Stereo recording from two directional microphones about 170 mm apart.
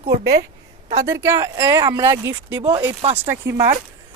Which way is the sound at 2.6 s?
30° right (ahead or behind).